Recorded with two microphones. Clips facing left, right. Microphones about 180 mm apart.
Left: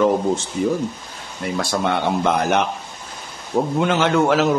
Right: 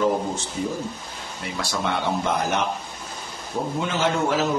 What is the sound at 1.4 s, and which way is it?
Speech, 50° left (ahead or behind).